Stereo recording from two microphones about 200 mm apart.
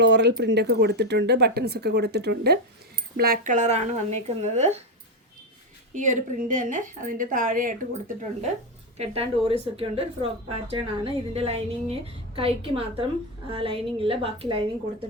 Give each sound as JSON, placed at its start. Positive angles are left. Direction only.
{"t": 0.0, "sound": "speech", "side_deg": -60}
{"t": 5.9, "sound": "a woman's voice", "side_deg": -40}
{"t": 9.0, "sound": "a woman's voice", "side_deg": -30}